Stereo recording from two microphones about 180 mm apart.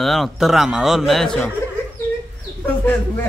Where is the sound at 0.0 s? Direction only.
Centre (ahead or behind).